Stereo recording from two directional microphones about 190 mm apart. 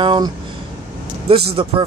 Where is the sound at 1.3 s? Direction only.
30° right (ahead or behind).